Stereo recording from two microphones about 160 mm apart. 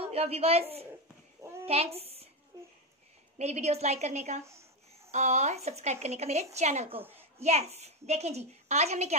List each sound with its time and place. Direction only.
0.1 s a woman's voice: 40° right (ahead or behind)
1.7 s a woman's voice: 40° right (ahead or behind)
3.3 s speech: 45° right (ahead or behind)